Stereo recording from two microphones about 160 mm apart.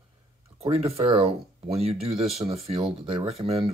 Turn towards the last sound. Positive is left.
turn(degrees=-40)  # may be behind; listen again after turning